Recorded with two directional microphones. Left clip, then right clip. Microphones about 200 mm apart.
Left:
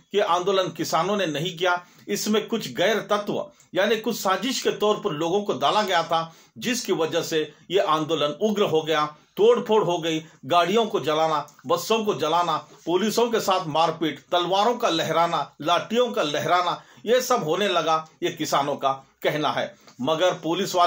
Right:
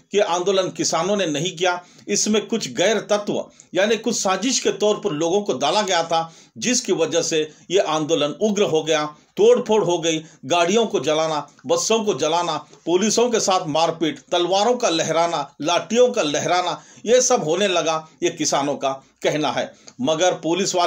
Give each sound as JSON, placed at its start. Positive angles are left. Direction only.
{"t": 0.1, "sound": "a man's voice", "side_deg": -35}